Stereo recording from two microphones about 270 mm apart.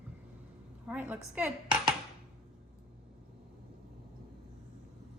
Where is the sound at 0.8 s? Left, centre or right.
Centre.